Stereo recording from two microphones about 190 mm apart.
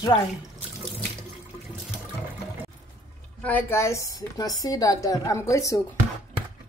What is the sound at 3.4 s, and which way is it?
A woman's voice, 10° left (ahead or behind).